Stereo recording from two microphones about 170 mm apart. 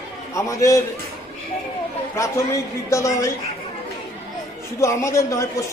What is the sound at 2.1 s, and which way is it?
A man's voice, 15° left (ahead or behind).